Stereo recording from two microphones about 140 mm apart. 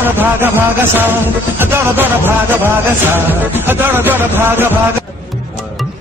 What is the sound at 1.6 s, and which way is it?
Music, 15° right (ahead or behind).